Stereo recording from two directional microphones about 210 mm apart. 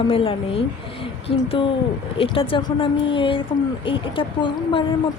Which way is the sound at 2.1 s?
25° left (ahead or behind).